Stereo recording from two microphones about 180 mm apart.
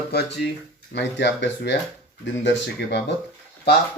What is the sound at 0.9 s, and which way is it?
Speech, 75° left (ahead or behind).